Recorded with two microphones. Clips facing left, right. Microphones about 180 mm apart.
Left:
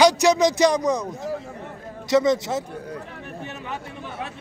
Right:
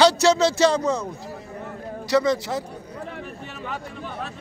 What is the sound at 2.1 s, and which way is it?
Speech, 20° left (ahead or behind).